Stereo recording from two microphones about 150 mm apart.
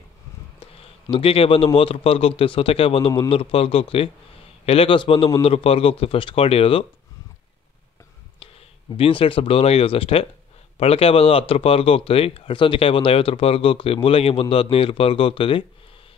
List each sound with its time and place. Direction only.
1.1 s speech: 40° left (ahead or behind)
8.9 s speech: 40° left (ahead or behind)